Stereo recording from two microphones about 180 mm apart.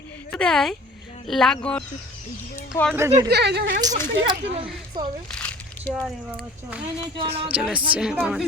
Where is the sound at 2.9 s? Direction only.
15° right (ahead or behind).